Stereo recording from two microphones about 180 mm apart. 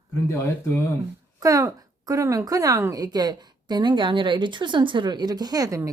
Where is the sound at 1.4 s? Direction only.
20° right (ahead or behind).